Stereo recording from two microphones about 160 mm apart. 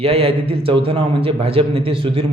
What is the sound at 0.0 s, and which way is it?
A man's voice, 35° right (ahead or behind).